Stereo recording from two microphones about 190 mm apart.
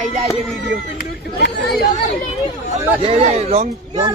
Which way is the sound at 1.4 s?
60° left (ahead or behind).